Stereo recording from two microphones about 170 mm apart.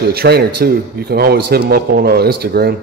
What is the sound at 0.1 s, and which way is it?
A man's voice, 65° right (ahead or behind).